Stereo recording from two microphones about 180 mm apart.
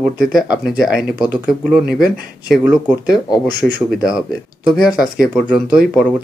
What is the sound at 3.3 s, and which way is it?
Speech, 20° left (ahead or behind).